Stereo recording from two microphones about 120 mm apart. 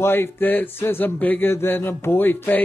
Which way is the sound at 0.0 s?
20° left (ahead or behind).